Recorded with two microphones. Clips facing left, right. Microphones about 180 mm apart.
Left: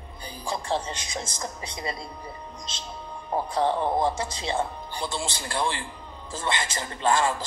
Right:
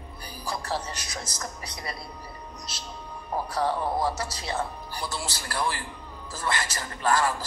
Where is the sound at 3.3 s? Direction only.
25° left (ahead or behind).